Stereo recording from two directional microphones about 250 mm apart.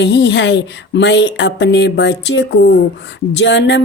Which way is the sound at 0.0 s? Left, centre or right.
Left.